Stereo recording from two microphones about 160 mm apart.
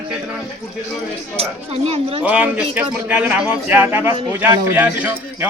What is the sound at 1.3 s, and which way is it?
Speech, 40° right (ahead or behind).